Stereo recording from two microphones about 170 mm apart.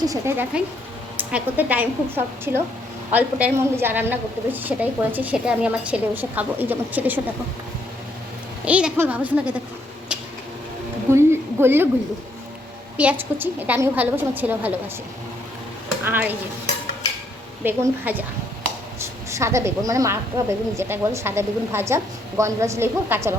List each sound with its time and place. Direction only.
0.0 s a woman's voice: 20° right (ahead or behind)
8.6 s a woman's voice: 10° right (ahead or behind)
11.1 s a sound: 15° right (ahead or behind)
13.0 s a woman's voice: 10° right (ahead or behind)
16.0 s a woman's voice: 10° right (ahead or behind)
17.6 s a woman's voice: 10° right (ahead or behind)